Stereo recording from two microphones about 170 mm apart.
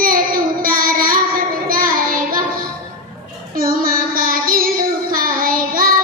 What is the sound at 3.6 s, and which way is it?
Child singing, 55° right (ahead or behind).